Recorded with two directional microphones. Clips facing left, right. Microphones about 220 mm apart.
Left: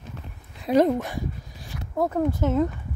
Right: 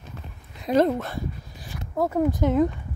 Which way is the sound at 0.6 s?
10° left (ahead or behind).